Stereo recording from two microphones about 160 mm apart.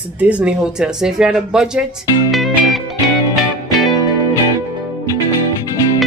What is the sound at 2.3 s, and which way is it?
Music, centre (ahead or behind).